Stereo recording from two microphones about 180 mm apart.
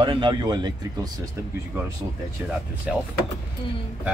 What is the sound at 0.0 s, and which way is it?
Speech, 25° right (ahead or behind).